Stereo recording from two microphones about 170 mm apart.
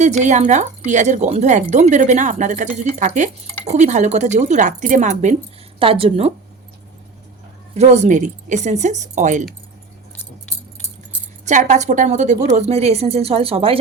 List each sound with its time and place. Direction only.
0.0 s speech: 45° right (ahead or behind)
5.8 s speech: 35° right (ahead or behind)
7.7 s speech: 40° right (ahead or behind)
11.4 s speech: 45° right (ahead or behind)